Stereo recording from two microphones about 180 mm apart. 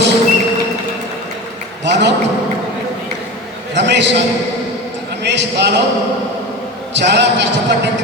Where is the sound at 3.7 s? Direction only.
75° right (ahead or behind).